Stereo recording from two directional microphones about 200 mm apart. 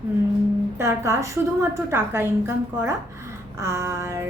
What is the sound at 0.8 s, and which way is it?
Speech, 15° right (ahead or behind).